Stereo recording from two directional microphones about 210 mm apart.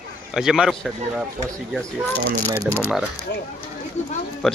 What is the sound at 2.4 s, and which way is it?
Speech, 15° right (ahead or behind).